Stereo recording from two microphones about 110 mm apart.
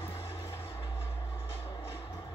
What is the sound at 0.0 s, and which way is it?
Music, 25° left (ahead or behind).